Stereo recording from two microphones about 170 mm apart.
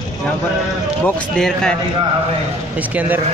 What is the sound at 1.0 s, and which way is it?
Speech, 5° left (ahead or behind).